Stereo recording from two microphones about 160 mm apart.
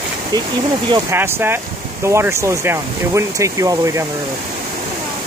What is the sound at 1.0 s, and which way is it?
Speech, 15° right (ahead or behind).